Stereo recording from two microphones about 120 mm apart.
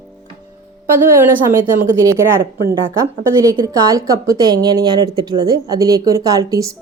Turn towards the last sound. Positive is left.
turn(degrees=-30)  # may be behind; listen again after turning